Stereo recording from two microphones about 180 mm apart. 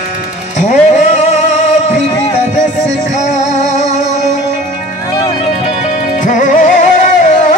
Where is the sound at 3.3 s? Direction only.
40° left (ahead or behind).